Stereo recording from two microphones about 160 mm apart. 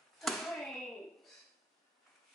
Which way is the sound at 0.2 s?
Centre (ahead or behind).